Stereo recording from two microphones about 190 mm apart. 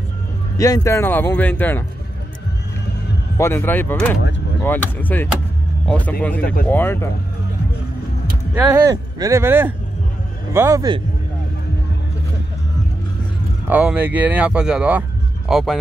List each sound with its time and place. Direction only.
0.6 s speech: 15° left (ahead or behind)
3.3 s speech: 10° left (ahead or behind)
8.5 s speech: 10° right (ahead or behind)
13.7 s speech: 10° right (ahead or behind)